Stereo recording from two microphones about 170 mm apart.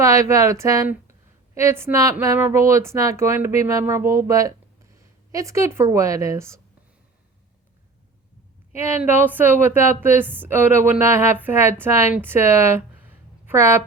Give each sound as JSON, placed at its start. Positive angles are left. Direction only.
{"t": 0.0, "sound": "a woman's voice", "side_deg": -20}
{"t": 8.8, "sound": "a woman's voice", "side_deg": -15}